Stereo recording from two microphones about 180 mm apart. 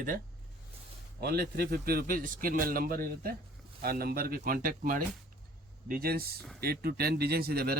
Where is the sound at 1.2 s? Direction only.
60° right (ahead or behind).